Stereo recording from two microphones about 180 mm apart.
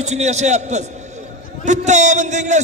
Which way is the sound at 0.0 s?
40° right (ahead or behind).